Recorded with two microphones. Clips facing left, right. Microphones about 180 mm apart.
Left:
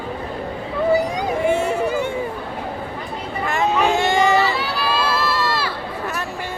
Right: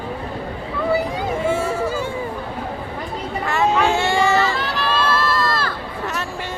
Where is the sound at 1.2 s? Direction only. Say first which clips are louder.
Left 2 dB; 15° left (ahead or behind).